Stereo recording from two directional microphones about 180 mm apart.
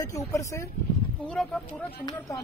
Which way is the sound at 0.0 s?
20° left (ahead or behind).